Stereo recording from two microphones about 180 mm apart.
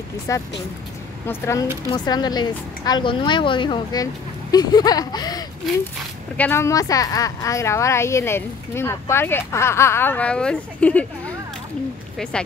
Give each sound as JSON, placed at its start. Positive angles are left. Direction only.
{"t": 0.3, "sound": "speech", "side_deg": 15}
{"t": 6.3, "sound": "speech", "side_deg": 10}